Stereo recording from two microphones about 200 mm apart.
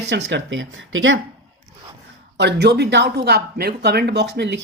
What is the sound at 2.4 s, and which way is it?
Speech, 60° right (ahead or behind).